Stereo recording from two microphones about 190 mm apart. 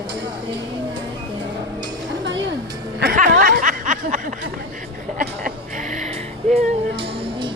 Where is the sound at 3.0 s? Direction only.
50° right (ahead or behind).